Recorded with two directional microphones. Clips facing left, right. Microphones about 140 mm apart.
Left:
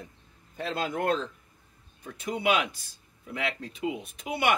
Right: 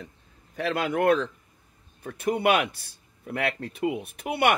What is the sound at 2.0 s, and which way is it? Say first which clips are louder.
Speech: right 5 dB; 55° right (ahead or behind).